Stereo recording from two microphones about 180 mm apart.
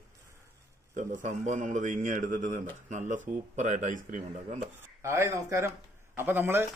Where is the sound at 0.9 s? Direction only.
45° right (ahead or behind).